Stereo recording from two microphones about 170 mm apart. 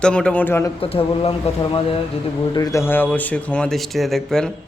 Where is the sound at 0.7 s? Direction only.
35° left (ahead or behind).